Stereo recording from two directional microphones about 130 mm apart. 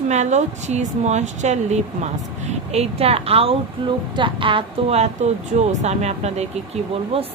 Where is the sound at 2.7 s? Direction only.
50° right (ahead or behind).